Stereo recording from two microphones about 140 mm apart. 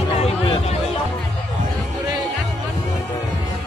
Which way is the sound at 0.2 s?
50° left (ahead or behind).